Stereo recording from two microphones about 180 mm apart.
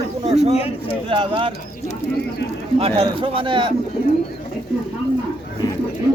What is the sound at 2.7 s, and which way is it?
Speech, 30° right (ahead or behind).